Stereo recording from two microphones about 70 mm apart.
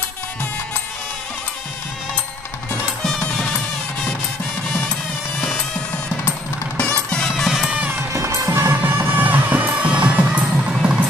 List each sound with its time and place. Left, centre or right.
3.0 s music: centre
6.8 s music: centre
7.9 s music: right; by 10.7 s centre
10.7 s music: centre